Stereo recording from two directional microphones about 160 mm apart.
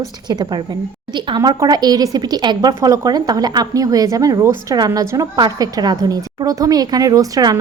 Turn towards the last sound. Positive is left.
turn(degrees=-20)  # may be behind; listen again after turning